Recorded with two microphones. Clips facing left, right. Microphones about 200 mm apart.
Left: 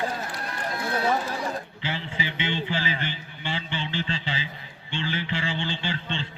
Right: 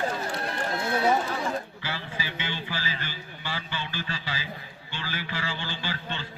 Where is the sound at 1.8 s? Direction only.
20° left (ahead or behind).